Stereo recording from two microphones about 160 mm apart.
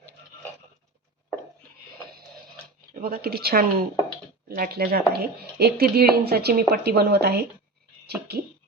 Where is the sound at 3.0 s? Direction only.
70° right (ahead or behind).